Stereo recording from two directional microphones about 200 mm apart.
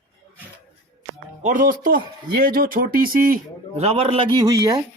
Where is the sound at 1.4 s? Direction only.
40° right (ahead or behind); by 4.8 s 20° right (ahead or behind).